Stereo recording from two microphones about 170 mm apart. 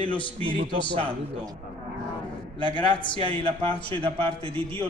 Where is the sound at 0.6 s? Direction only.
35° right (ahead or behind).